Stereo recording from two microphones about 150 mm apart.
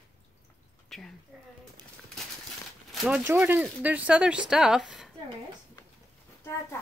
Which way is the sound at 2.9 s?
5° right (ahead or behind).